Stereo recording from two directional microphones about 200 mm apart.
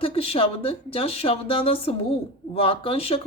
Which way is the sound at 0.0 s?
30° left (ahead or behind).